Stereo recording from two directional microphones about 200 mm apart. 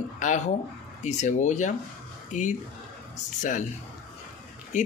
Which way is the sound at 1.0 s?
35° left (ahead or behind).